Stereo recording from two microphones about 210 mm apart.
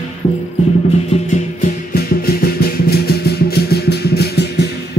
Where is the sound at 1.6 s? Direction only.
45° left (ahead or behind).